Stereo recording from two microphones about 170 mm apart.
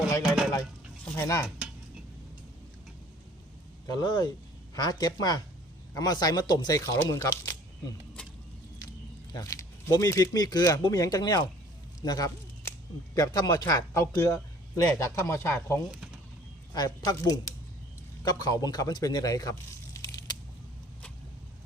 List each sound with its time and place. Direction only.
1.0 s stir: 15° left (ahead or behind)
3.8 s speech: 25° left (ahead or behind)
9.3 s a man's voice: 20° left (ahead or behind)